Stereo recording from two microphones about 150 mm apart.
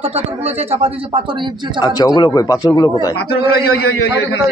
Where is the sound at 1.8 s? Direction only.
25° left (ahead or behind).